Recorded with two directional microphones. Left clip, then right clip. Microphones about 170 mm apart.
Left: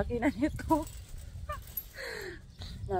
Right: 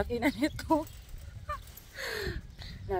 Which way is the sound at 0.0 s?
35° right (ahead or behind).